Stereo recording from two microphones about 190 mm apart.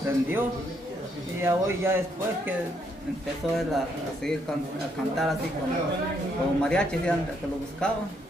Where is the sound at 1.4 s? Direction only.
15° right (ahead or behind).